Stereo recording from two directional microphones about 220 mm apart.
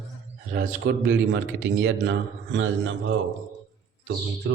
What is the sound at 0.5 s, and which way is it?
A man's voice, 50° right (ahead or behind).